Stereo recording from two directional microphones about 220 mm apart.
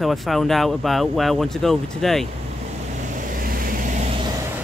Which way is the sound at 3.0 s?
35° right (ahead or behind).